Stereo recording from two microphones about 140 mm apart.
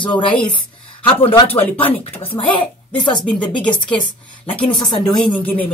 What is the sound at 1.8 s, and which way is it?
Speech, 40° left (ahead or behind).